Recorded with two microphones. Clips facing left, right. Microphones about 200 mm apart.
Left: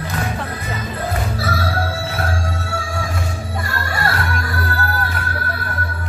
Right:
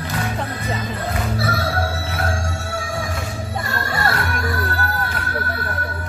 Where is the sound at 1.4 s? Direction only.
25° right (ahead or behind).